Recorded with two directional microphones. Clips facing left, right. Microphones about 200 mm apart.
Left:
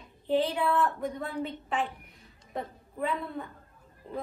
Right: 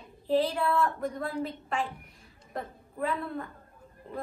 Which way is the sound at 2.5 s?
Centre (ahead or behind).